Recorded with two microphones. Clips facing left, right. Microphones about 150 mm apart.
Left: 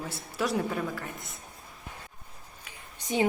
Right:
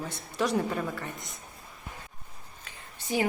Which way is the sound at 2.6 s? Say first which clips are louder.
Even; 20° left (ahead or behind).